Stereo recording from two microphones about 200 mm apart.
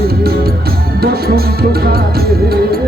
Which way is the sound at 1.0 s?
50° right (ahead or behind).